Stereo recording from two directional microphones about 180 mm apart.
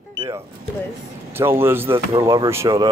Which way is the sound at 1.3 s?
15° right (ahead or behind).